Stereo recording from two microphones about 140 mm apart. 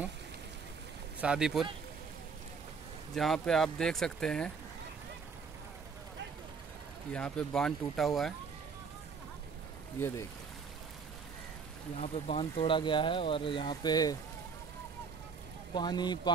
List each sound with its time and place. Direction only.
1.2 s speech: 5° right (ahead or behind)
3.3 s speech: 5° left (ahead or behind)
7.1 s speech: 5° left (ahead or behind)
9.9 s speech: 15° left (ahead or behind)
12.0 s speech: 45° left (ahead or behind); by 14.1 s 30° left (ahead or behind)
15.7 s speech: 30° left (ahead or behind)